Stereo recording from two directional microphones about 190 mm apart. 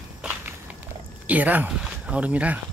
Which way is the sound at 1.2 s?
10° right (ahead or behind).